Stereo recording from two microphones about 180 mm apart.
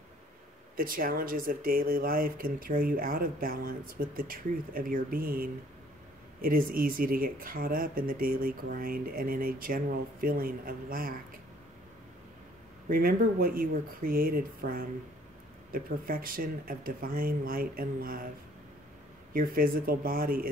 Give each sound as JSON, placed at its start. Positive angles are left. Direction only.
{"t": 0.7, "sound": "speech", "side_deg": -50}
{"t": 12.8, "sound": "speech", "side_deg": -55}
{"t": 19.3, "sound": "speech", "side_deg": -55}